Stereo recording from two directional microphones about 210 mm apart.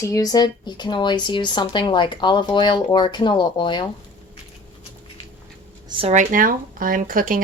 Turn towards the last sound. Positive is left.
turn(degrees=-40)  # may be behind; listen again after turning